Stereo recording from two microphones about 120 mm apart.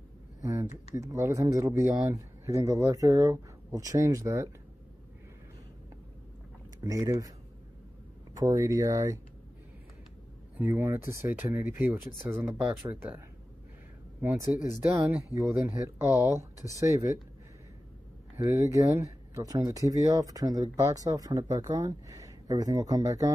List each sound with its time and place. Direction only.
0.4 s a sound: 25° right (ahead or behind)
0.9 s speech: 25° right (ahead or behind)
6.8 s speech: 30° right (ahead or behind)
8.4 s speech: 25° right (ahead or behind)
10.6 s speech: 20° right (ahead or behind)
14.7 s speech: 25° right (ahead or behind)
18.5 s speech: 25° right (ahead or behind)